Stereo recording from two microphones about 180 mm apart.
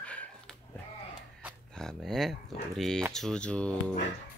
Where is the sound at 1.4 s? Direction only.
10° right (ahead or behind).